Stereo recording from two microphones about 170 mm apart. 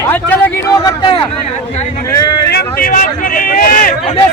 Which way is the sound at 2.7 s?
50° left (ahead or behind).